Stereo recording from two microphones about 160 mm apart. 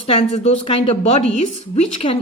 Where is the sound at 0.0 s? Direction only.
40° left (ahead or behind).